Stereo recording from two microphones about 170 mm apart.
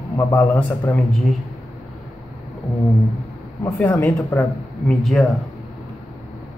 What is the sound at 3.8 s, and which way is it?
Speech, 15° left (ahead or behind).